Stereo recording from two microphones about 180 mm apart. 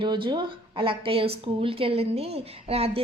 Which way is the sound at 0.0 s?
25° right (ahead or behind).